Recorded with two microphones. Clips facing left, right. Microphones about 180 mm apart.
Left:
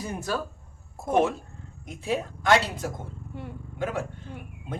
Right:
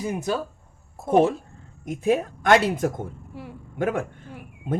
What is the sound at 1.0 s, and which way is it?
Speech, 35° right (ahead or behind).